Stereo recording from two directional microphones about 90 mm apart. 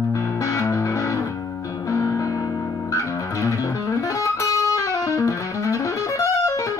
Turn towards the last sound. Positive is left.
turn(degrees=35)  # may be behind; listen again after turning